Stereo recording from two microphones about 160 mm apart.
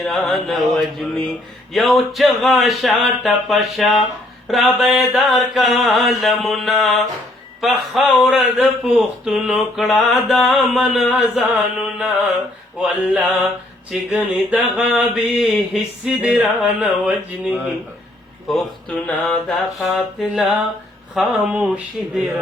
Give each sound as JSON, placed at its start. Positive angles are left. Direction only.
{"t": 0.0, "sound": "mantra", "side_deg": 5}
{"t": 13.9, "sound": "mantra", "side_deg": -5}